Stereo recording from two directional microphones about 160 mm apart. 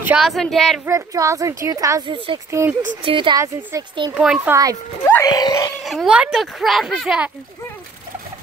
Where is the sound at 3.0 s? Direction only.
30° right (ahead or behind).